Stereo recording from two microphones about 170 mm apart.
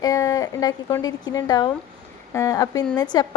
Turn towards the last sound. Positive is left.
turn(degrees=25)  # may be behind; listen again after turning